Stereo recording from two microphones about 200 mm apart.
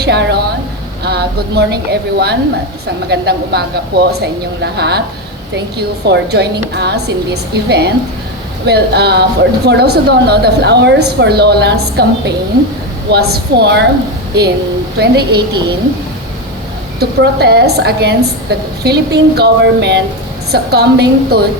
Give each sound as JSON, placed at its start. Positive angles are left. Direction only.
{"t": 0.0, "sound": "a sound", "side_deg": -55}
{"t": 1.0, "sound": "a woman's voice", "side_deg": -55}
{"t": 14.9, "sound": "a woman's voice", "side_deg": -55}
{"t": 17.0, "sound": "a woman's voice", "side_deg": -55}